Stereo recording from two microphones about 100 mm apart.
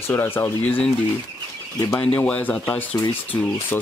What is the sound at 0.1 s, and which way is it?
Speech, 20° left (ahead or behind).